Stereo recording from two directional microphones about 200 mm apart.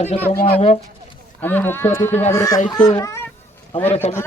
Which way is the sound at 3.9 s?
30° left (ahead or behind).